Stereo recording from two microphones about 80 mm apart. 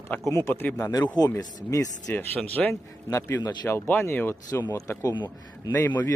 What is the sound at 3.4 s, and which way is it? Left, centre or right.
Speech, left.